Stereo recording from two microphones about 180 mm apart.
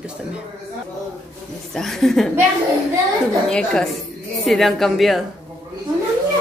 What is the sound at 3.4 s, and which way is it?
A woman's voice, 5° left (ahead or behind).